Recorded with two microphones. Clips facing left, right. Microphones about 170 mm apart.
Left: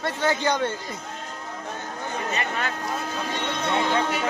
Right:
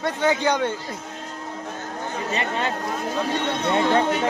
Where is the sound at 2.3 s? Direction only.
25° right (ahead or behind).